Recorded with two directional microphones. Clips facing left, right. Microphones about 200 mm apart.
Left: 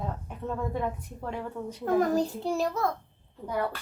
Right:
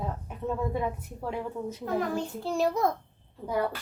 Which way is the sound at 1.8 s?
40° left (ahead or behind).